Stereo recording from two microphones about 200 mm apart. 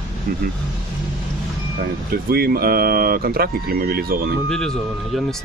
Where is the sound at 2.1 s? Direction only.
50° right (ahead or behind).